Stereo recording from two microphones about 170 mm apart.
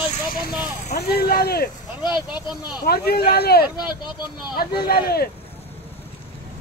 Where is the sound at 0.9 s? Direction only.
65° left (ahead or behind).